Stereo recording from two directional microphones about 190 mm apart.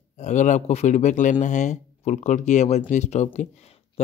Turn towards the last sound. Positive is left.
turn(degrees=35)  # may be behind; listen again after turning